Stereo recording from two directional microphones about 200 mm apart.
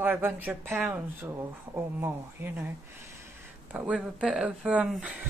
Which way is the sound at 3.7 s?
5° right (ahead or behind).